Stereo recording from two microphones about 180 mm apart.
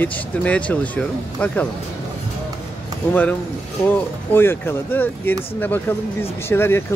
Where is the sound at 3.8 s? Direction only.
10° left (ahead or behind).